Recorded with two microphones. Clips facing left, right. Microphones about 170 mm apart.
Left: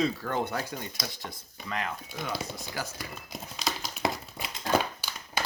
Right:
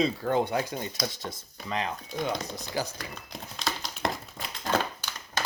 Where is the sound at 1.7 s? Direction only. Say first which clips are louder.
Right 3 dB; 25° right (ahead or behind).